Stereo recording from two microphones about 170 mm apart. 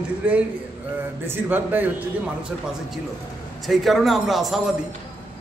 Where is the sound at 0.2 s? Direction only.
5° right (ahead or behind).